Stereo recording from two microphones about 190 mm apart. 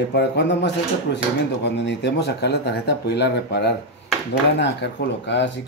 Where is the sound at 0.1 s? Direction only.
65° left (ahead or behind).